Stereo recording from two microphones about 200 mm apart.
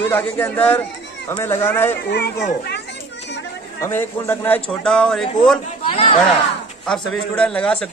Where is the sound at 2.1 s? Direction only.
55° left (ahead or behind).